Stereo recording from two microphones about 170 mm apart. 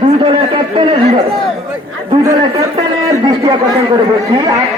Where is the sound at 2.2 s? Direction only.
20° right (ahead or behind).